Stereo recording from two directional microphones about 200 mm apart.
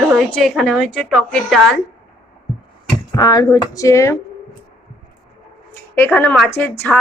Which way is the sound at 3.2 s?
20° left (ahead or behind).